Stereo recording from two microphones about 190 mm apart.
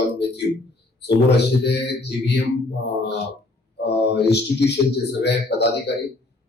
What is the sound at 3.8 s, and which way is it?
A man's voice, 60° left (ahead or behind).